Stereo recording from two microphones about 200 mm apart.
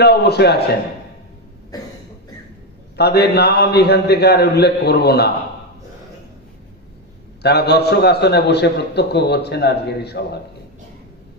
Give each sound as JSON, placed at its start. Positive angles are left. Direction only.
{"t": 0.0, "sound": "a man's voice", "side_deg": 55}
{"t": 1.7, "sound": "cough", "side_deg": 20}
{"t": 3.0, "sound": "a man's voice", "side_deg": 55}
{"t": 7.4, "sound": "a man's voice", "side_deg": 55}